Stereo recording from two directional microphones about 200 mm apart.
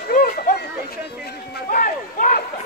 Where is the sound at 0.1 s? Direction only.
50° left (ahead or behind).